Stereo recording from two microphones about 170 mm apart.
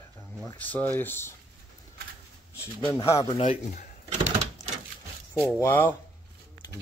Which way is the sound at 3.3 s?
45° left (ahead or behind).